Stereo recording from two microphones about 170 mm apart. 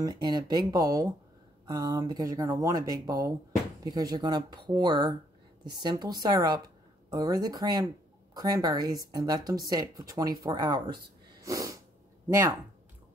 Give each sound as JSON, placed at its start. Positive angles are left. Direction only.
{"t": 0.0, "sound": "speech", "side_deg": -25}
{"t": 11.4, "sound": "sneeze", "side_deg": -20}
{"t": 12.3, "sound": "speech", "side_deg": -20}